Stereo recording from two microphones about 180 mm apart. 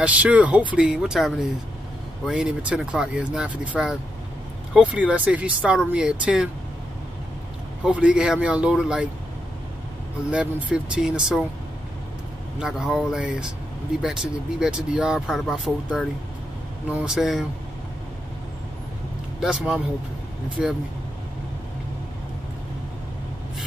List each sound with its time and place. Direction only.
0.0 s speech: 10° right (ahead or behind)
7.8 s speech: 5° right (ahead or behind)
10.3 s speech: 5° right (ahead or behind)
12.5 s speech: 5° right (ahead or behind)
19.4 s speech: 5° right (ahead or behind)